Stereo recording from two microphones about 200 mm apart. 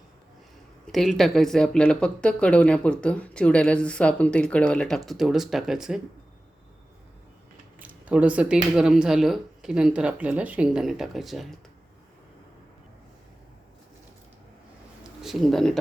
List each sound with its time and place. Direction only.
0.9 s speech: centre (ahead or behind)
7.8 s speech: 5° right (ahead or behind)
15.0 s a sound: centre (ahead or behind)